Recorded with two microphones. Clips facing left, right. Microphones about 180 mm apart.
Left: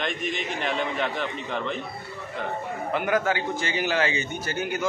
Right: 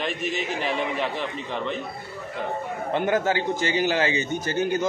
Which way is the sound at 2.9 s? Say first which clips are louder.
Right 2 dB; 25° right (ahead or behind).